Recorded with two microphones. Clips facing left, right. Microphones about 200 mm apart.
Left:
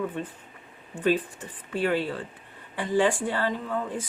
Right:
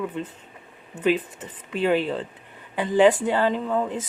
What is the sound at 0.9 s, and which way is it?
Speech, 20° right (ahead or behind).